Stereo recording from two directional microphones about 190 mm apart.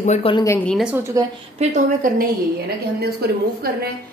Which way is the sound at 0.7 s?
5° right (ahead or behind).